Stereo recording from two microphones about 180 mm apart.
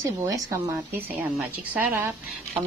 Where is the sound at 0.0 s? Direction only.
20° right (ahead or behind).